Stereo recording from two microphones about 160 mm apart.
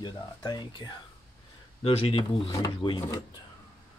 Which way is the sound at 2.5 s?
25° left (ahead or behind).